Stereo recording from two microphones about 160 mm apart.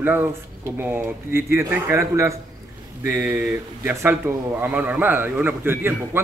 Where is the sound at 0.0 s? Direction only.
15° right (ahead or behind).